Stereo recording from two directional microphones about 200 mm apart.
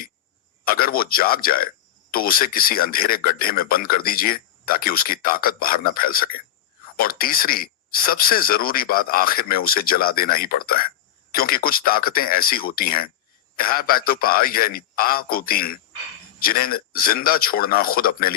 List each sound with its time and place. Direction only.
0.6 s a man's voice: 45° left (ahead or behind)